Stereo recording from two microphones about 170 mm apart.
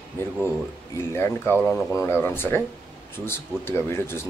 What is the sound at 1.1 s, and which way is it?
Speech, 15° left (ahead or behind).